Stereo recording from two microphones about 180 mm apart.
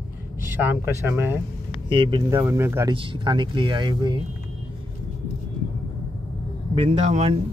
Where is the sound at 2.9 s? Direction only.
30° right (ahead or behind).